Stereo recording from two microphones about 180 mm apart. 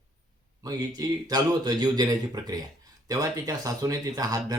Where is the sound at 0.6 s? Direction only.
20° right (ahead or behind).